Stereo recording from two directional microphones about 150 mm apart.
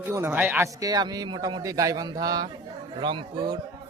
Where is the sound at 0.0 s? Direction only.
15° right (ahead or behind).